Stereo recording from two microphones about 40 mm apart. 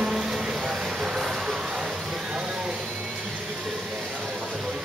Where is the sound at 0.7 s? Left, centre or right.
Centre.